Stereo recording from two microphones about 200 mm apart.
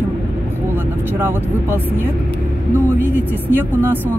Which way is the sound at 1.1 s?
10° right (ahead or behind).